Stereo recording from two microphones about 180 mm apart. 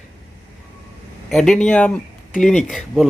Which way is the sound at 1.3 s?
5° left (ahead or behind).